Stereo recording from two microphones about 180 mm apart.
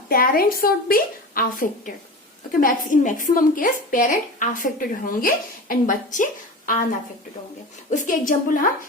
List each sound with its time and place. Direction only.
0.1 s a woman's voice: 55° left (ahead or behind)
7.9 s a woman's voice: 45° left (ahead or behind)